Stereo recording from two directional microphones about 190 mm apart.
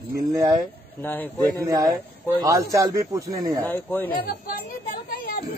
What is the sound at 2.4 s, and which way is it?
Speech, 15° right (ahead or behind).